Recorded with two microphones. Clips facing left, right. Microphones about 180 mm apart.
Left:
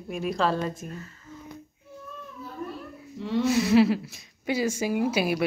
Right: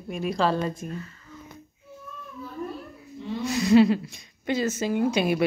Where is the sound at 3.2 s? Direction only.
85° left.